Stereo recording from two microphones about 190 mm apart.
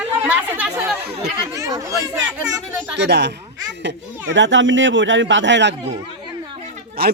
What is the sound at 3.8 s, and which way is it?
Speech, 75° right (ahead or behind).